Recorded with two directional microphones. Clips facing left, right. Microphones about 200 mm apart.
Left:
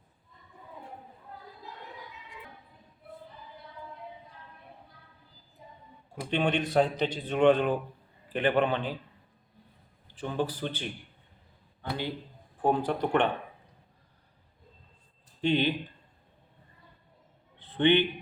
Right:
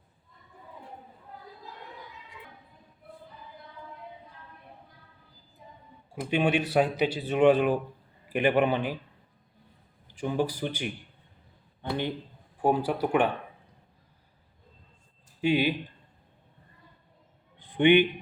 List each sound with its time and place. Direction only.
6.3 s speech: 10° right (ahead or behind)
10.1 s a man's voice: 10° right (ahead or behind)
12.6 s speech: 10° right (ahead or behind)
15.4 s speech: 10° right (ahead or behind)
17.6 s a sound: 15° right (ahead or behind)